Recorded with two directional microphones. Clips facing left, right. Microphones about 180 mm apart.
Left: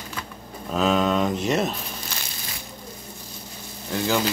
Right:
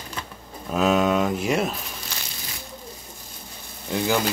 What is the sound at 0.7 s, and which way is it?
Speech, 5° right (ahead or behind).